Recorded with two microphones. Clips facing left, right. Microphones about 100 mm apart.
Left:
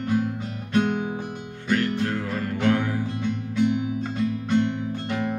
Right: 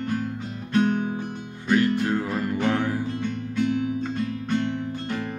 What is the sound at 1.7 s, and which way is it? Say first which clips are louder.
Music: right 3 dB; 15° right (ahead or behind).